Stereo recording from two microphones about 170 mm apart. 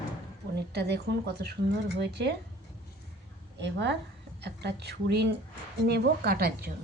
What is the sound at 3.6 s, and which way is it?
Speech, 90° right.